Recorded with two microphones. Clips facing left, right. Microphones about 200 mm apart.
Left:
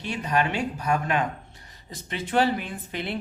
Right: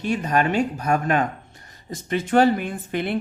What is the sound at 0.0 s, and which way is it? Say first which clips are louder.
Speech: right 4 dB; 45° right (ahead or behind).